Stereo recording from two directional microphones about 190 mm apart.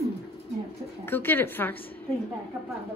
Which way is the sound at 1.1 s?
10° left (ahead or behind).